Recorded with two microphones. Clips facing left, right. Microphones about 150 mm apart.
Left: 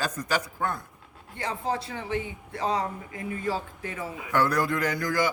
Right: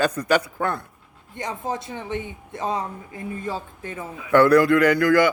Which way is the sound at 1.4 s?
20° right (ahead or behind).